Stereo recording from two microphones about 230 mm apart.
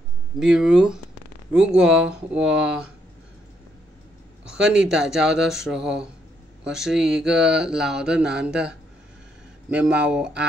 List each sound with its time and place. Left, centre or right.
0.4 s speech: centre
4.5 s speech: centre